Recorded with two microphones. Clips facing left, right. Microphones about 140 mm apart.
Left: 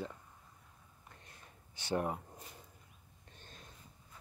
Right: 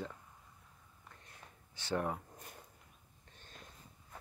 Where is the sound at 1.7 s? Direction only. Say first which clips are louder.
Left 1 dB; 15° left (ahead or behind).